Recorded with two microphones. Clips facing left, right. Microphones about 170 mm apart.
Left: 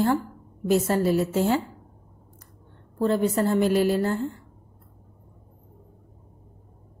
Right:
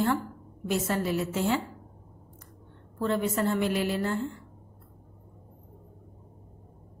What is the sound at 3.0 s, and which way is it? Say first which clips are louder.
A woman's voice: left 5 dB; 35° left (ahead or behind).